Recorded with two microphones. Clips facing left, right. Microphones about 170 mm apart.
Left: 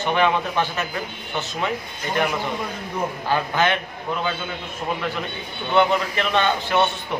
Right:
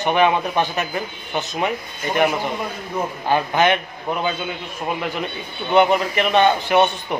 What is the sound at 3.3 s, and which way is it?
Speech, 20° right (ahead or behind).